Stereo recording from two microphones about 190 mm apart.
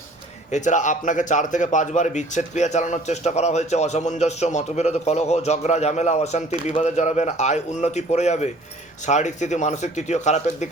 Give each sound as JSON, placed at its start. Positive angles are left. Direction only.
{"t": 0.5, "sound": "speech", "side_deg": 40}